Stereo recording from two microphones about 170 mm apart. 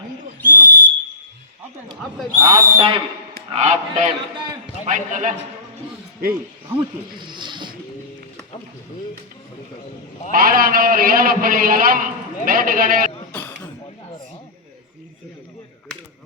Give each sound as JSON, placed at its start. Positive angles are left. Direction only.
{"t": 0.4, "sound": "whistle", "side_deg": 10}
{"t": 2.4, "sound": "a man's voice", "side_deg": -30}
{"t": 3.5, "sound": "a man's voice", "side_deg": -40}
{"t": 7.2, "sound": "speech", "side_deg": -25}
{"t": 10.3, "sound": "a man's voice", "side_deg": -60}
{"t": 13.3, "sound": "a sound", "side_deg": 10}